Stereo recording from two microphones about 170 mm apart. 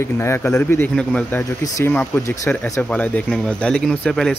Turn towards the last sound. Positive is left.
turn(degrees=5)  # may be behind; listen again after turning